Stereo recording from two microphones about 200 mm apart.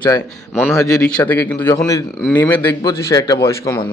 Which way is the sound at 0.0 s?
10° left (ahead or behind).